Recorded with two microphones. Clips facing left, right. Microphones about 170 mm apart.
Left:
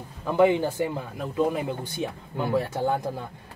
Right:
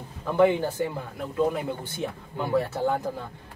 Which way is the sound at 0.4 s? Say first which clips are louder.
Left 1 dB; 15° left (ahead or behind).